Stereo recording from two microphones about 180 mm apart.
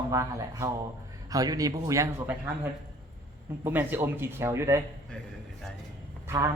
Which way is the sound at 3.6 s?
10° right (ahead or behind).